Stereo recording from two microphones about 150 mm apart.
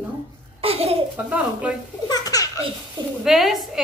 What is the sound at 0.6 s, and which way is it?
Speech, 40° right (ahead or behind).